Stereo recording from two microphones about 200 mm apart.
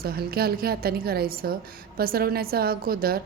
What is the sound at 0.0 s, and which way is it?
A woman's voice, 50° right (ahead or behind).